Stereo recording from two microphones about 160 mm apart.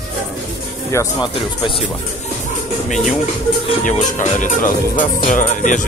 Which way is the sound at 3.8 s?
50° left (ahead or behind).